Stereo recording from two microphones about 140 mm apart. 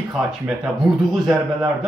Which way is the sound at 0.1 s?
5° right (ahead or behind).